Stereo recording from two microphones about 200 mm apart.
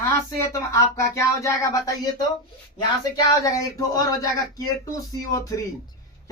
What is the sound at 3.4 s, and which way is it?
Speech, 15° left (ahead or behind).